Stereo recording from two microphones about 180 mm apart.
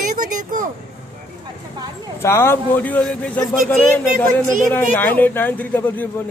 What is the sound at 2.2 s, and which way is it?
A man's voice, 15° left (ahead or behind).